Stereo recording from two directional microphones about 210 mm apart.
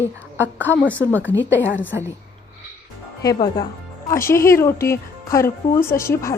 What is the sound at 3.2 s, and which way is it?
A woman's voice, 20° left (ahead or behind).